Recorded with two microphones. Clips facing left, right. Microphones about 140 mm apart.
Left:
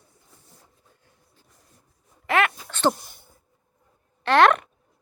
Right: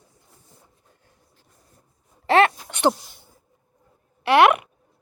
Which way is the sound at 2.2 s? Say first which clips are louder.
Right 6 dB; 30° right (ahead or behind).